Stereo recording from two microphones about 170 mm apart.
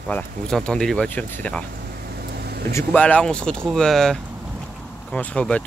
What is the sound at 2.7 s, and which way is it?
Speech, 5° left (ahead or behind).